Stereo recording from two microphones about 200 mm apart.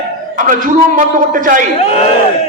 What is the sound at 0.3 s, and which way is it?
A man's voice, 40° right (ahead or behind).